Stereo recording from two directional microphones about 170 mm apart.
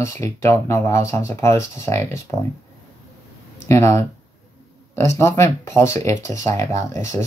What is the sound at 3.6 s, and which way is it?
Speech, 15° left (ahead or behind).